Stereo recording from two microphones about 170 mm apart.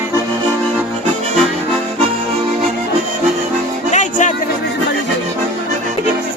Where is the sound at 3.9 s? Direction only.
45° left (ahead or behind).